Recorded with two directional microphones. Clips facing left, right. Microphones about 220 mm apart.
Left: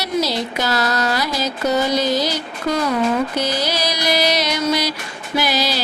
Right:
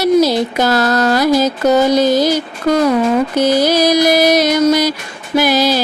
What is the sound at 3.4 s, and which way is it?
Music, 50° right (ahead or behind).